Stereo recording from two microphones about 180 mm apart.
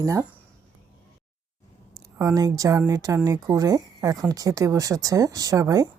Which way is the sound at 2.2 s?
20° right (ahead or behind).